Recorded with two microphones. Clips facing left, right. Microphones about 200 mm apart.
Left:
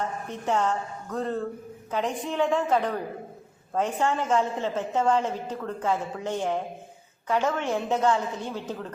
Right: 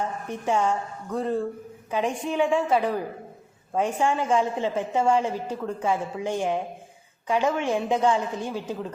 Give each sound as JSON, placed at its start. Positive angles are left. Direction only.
{"t": 0.3, "sound": "a woman's voice", "side_deg": -10}